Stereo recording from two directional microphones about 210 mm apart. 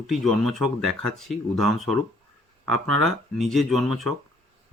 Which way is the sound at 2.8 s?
80° right.